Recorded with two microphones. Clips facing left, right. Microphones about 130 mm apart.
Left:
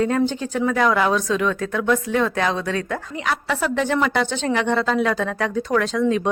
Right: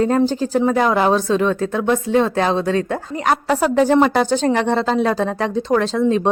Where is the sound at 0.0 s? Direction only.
35° right (ahead or behind).